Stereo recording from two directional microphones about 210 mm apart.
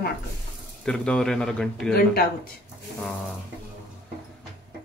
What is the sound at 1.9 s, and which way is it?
Speech, 45° left (ahead or behind).